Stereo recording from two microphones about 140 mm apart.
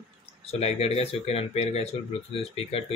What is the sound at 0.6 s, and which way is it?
Speech, 45° left (ahead or behind).